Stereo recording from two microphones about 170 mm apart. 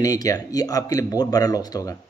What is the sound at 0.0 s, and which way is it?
A man's voice, 20° left (ahead or behind).